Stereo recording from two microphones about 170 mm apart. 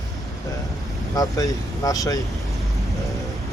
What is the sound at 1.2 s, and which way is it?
Speech, 20° left (ahead or behind).